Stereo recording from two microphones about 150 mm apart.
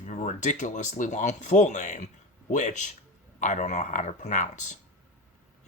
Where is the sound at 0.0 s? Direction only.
50° left (ahead or behind).